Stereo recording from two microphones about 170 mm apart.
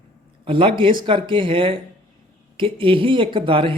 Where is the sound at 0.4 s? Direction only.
30° right (ahead or behind).